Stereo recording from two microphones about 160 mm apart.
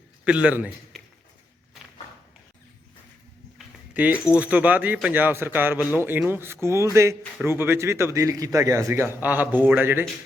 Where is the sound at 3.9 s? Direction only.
10° right (ahead or behind).